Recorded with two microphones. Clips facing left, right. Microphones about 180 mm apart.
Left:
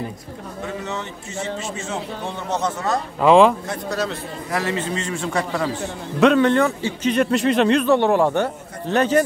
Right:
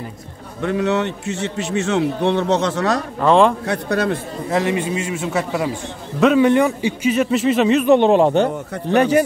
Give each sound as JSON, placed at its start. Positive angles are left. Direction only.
{"t": 0.6, "sound": "a man's voice", "side_deg": -70}
{"t": 3.2, "sound": "speech", "side_deg": 5}
{"t": 3.6, "sound": "a man's voice", "side_deg": -65}
{"t": 4.5, "sound": "a man's voice", "side_deg": -20}
{"t": 7.8, "sound": "a man's voice", "side_deg": -20}